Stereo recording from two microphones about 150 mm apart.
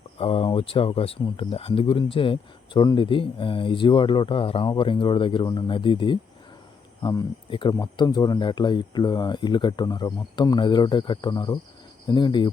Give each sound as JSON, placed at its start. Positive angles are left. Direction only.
{"t": 0.2, "sound": "speech", "side_deg": 40}
{"t": 7.0, "sound": "speech", "side_deg": 25}